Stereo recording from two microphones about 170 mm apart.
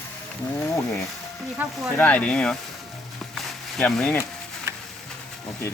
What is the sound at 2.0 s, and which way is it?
Speech, 10° left (ahead or behind).